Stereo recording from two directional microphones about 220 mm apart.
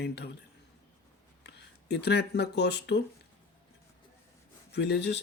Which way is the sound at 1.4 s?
50° left (ahead or behind).